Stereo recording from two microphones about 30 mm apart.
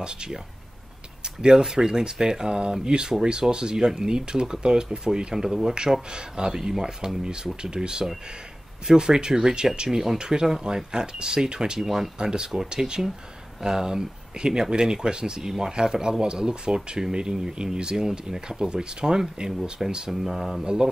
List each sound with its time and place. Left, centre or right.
0.0 s speech: right
1.4 s speech: right
2.4 s speech: right
5.3 s speech: centre
5.8 s speech: right
10.1 s speech: right
11.8 s speech: centre
12.2 s speech: right
20.1 s speech: centre
20.6 s speech: right